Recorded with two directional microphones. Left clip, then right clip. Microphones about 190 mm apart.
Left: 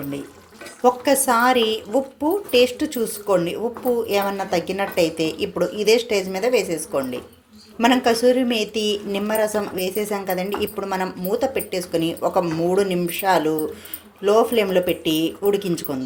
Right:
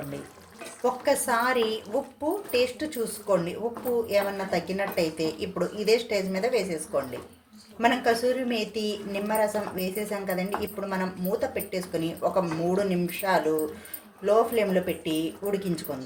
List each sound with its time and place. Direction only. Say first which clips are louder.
0.8 s a woman's voice: left 7 dB; 35° left (ahead or behind)